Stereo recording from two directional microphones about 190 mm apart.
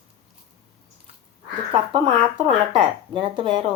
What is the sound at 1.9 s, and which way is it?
Speech, 25° right (ahead or behind).